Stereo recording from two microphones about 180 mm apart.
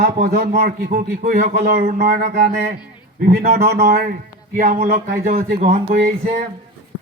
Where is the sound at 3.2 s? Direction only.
55° right (ahead or behind).